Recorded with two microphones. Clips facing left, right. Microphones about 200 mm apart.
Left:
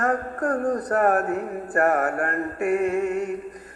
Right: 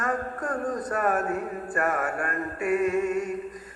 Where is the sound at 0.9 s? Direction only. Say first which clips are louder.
Left 5 dB; 55° left (ahead or behind).